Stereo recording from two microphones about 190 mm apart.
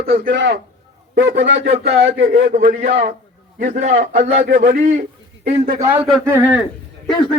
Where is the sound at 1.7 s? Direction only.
35° right (ahead or behind).